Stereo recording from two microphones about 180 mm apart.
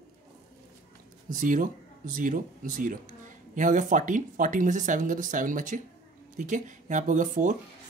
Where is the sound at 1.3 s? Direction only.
45° right (ahead or behind).